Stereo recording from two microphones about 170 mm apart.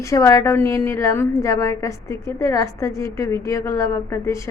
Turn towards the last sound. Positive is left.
turn(degrees=15)  # may be behind; listen again after turning